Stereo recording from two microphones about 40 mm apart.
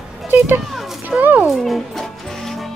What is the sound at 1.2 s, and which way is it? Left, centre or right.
Music, right.